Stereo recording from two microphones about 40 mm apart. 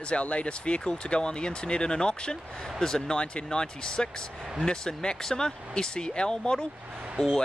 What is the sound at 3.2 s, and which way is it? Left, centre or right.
Speech, left.